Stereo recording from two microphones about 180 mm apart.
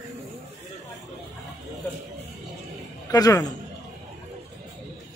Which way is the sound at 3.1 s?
20° left (ahead or behind).